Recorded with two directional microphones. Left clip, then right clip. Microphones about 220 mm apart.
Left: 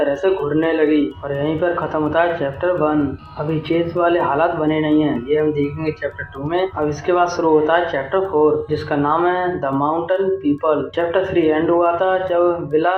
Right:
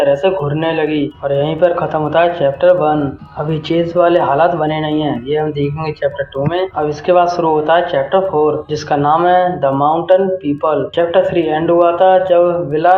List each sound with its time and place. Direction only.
0.0 s speech: 30° right (ahead or behind)
0.9 s speech: centre (ahead or behind)
1.5 s speech: 30° right (ahead or behind)
6.7 s speech: 30° right (ahead or behind)